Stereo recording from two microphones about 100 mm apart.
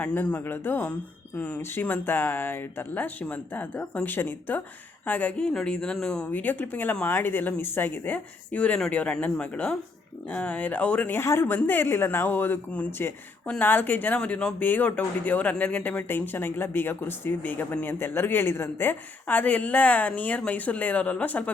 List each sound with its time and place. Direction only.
0.0 s speech: 15° left (ahead or behind)
6.3 s speech: 15° left (ahead or behind)